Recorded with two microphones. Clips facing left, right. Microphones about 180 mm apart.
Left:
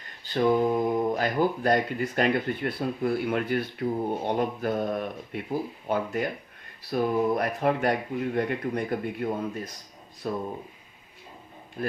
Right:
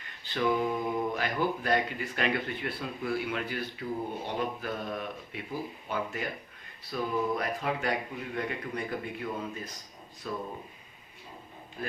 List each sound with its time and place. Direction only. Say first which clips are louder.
0.0 s speech: left 6 dB; 40° left (ahead or behind)